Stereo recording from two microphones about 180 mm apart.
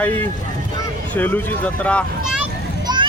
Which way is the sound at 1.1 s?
10° left (ahead or behind).